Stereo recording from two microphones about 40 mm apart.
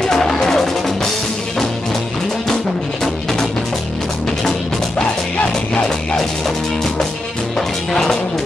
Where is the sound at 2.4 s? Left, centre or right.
Centre.